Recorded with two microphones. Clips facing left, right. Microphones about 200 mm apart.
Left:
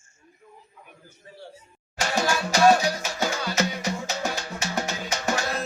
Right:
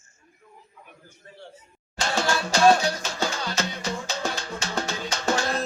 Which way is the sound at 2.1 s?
15° left (ahead or behind).